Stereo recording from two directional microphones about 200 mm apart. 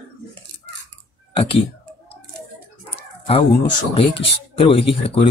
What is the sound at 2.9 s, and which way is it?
Dog, 30° left (ahead or behind).